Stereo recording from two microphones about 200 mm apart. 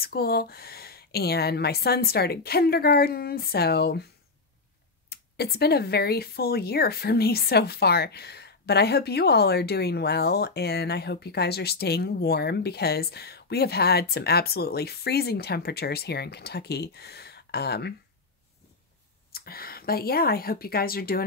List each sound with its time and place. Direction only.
0.0 s speech: 50° left (ahead or behind)
5.1 s speech: 55° left (ahead or behind)
19.3 s speech: 50° left (ahead or behind)